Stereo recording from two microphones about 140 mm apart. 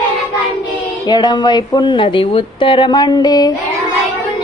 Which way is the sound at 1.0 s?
30° left (ahead or behind).